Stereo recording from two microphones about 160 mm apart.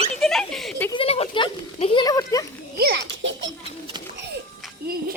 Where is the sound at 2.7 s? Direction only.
80° right.